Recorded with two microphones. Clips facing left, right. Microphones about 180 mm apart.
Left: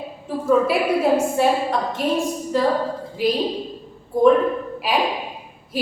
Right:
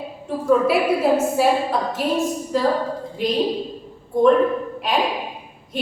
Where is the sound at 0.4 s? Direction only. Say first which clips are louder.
Right 1 dB; centre (ahead or behind).